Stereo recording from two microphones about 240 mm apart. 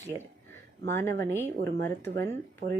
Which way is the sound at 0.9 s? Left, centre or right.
Centre.